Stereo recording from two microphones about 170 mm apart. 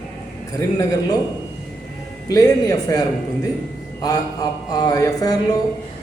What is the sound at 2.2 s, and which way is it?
Speech, 20° left (ahead or behind).